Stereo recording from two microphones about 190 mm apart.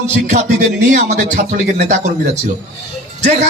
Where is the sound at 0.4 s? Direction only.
40° right (ahead or behind).